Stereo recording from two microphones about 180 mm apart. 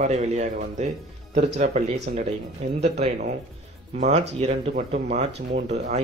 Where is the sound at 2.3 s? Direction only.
35° right (ahead or behind).